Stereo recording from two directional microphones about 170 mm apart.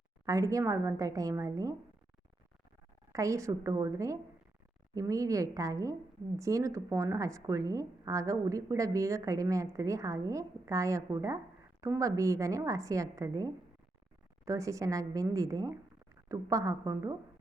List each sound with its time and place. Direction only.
0.3 s a woman's voice: 20° right (ahead or behind)
3.1 s a woman's voice: 20° right (ahead or behind)